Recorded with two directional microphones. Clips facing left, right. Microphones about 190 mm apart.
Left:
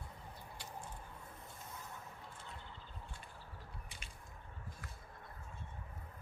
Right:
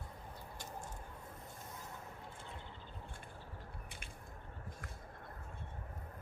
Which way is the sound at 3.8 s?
55° right (ahead or behind).